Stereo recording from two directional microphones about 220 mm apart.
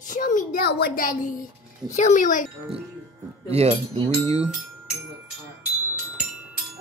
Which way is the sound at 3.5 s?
30° right (ahead or behind).